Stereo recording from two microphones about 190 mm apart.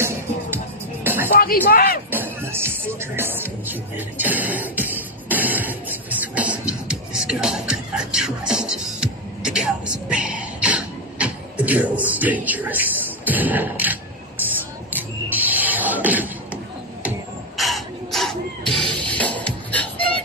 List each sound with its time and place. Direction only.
1.0 s music: 10° right (ahead or behind)
1.4 s speech: 50° left (ahead or behind)
2.0 s music: 10° right (ahead or behind)
14.9 s a sound: 10° right (ahead or behind)
17.6 s a sound: centre (ahead or behind)
18.9 s music: 5° left (ahead or behind)